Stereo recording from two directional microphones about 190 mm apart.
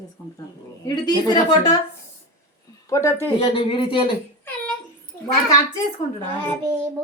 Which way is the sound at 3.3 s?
30° left (ahead or behind).